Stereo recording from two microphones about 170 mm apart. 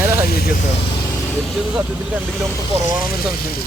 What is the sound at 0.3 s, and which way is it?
Vehicle, 65° left (ahead or behind).